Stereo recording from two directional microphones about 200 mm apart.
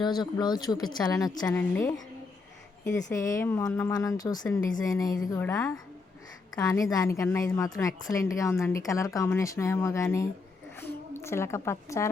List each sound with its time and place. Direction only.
0.3 s a woman's voice: 20° left (ahead or behind)